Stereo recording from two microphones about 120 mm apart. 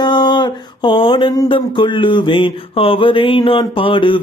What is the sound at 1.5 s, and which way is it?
Mantra, 45° left (ahead or behind).